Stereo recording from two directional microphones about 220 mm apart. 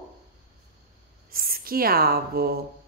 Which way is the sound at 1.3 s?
40° right (ahead or behind).